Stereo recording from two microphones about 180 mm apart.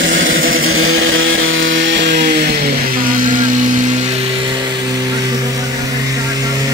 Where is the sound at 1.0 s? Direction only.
90° right.